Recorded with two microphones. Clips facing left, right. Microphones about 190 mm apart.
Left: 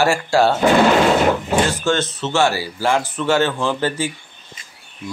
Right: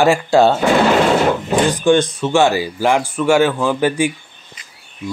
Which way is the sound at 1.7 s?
15° right (ahead or behind).